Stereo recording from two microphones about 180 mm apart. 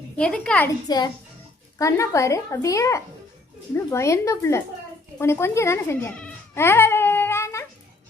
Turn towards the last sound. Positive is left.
turn(degrees=15)  # may be behind; listen again after turning